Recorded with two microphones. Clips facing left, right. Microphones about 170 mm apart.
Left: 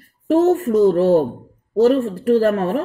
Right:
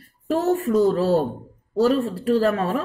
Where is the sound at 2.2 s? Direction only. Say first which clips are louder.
Left 5 dB; 50° left (ahead or behind).